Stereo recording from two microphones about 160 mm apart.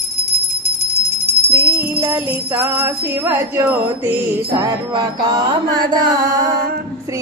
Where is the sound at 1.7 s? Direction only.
15° right (ahead or behind).